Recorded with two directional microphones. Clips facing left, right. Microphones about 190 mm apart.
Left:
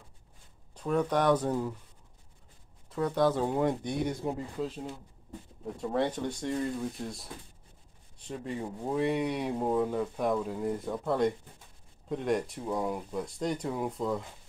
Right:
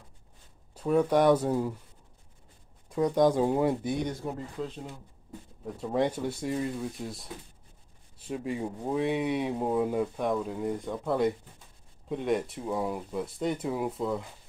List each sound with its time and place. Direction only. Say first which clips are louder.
0.7 s speech: right 4 dB; 10° right (ahead or behind)
2.9 s speech: right 3 dB; 15° right (ahead or behind)
4.2 s speech: left 2 dB; 20° left (ahead or behind)
4.6 s speech: left 1 dB; 5° left (ahead or behind)
5.9 s speech: right 3 dB; 10° right (ahead or behind)
8.3 s speech: right 3 dB; 10° right (ahead or behind)
10.1 s speech: even; centre (ahead or behind)